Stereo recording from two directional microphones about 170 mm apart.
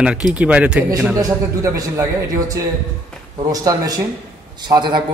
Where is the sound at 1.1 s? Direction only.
20° right (ahead or behind).